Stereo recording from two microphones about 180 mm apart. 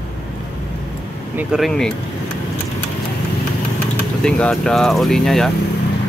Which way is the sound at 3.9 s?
5° left (ahead or behind).